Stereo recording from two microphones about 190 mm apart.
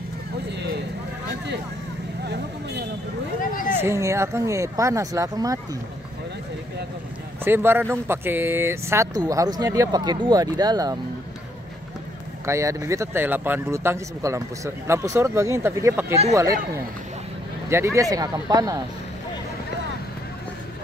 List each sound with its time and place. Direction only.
0.5 s vehicle: 65° right (ahead or behind)
3.8 s speech: 15° right (ahead or behind)
7.4 s speech: 10° right (ahead or behind)
12.4 s speech: 15° right (ahead or behind)
17.6 s speech: 15° right (ahead or behind)